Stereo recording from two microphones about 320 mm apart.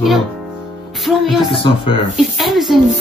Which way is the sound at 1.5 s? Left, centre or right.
Centre.